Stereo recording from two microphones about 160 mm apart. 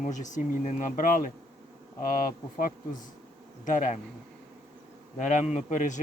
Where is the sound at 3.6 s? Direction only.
50° left (ahead or behind).